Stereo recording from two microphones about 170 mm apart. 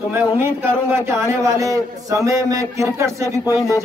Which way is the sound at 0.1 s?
15° right (ahead or behind).